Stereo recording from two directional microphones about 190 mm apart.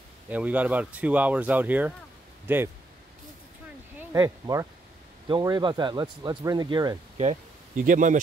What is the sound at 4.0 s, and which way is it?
Speech, 15° right (ahead or behind).